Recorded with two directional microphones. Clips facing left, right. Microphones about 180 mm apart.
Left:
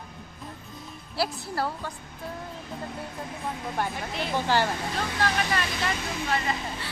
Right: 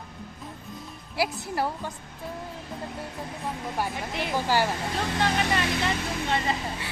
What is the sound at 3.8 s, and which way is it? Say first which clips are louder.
Speech: even; 10° right (ahead or behind).